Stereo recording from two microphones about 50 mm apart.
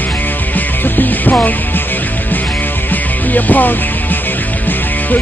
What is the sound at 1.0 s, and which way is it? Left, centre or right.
Music, left.